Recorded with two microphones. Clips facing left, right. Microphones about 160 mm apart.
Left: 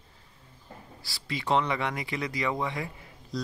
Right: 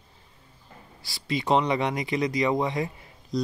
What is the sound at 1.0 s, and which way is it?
Speech, 20° right (ahead or behind).